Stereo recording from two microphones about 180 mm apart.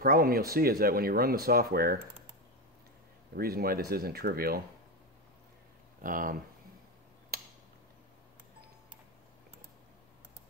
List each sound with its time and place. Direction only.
0.0 s speech: 55° right (ahead or behind)
3.3 s speech: 55° right (ahead or behind)
6.0 s speech: 50° right (ahead or behind)
7.3 s a sound: 60° right (ahead or behind)